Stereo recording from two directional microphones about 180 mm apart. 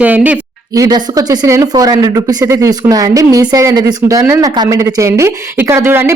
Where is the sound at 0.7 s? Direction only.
20° right (ahead or behind).